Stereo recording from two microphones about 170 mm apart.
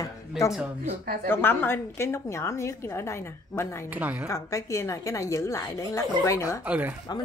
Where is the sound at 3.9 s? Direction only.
10° right (ahead or behind).